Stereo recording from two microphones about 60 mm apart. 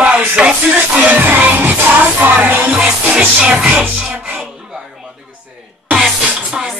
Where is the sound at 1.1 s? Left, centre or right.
Right.